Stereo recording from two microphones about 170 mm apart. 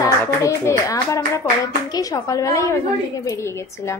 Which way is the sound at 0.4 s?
20° left (ahead or behind).